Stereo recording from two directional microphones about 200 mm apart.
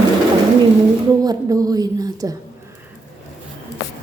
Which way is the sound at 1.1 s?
20° right (ahead or behind).